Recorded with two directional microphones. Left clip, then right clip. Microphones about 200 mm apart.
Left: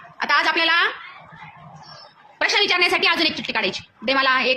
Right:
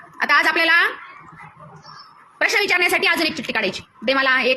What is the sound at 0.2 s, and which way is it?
Speech, 10° right (ahead or behind).